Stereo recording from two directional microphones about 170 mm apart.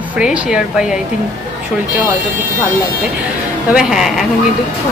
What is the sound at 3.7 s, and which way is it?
Speech, 5° right (ahead or behind).